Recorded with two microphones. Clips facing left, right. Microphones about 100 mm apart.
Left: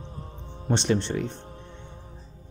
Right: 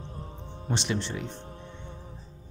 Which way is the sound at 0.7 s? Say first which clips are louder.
Left 6 dB; 35° left (ahead or behind).